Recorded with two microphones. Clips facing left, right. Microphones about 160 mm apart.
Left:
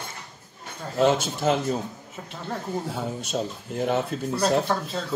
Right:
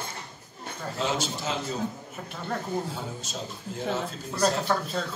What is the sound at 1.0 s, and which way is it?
Speech, 55° left (ahead or behind).